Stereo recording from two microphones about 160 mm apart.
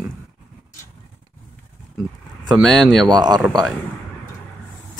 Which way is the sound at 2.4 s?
Centre (ahead or behind).